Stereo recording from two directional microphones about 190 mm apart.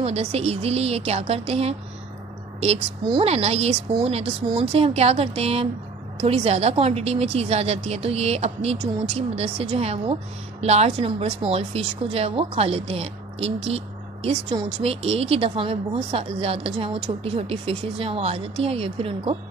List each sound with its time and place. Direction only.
0.0 s a woman's voice: 35° right (ahead or behind)